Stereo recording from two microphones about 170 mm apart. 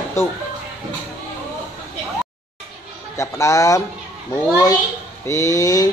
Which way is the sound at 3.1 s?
15° left (ahead or behind).